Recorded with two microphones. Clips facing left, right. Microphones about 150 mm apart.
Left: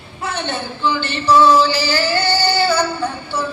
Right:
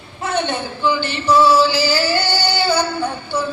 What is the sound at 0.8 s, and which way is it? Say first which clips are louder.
Singing: even; 10° right (ahead or behind).